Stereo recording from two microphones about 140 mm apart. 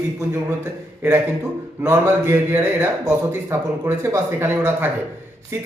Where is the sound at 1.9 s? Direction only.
20° right (ahead or behind).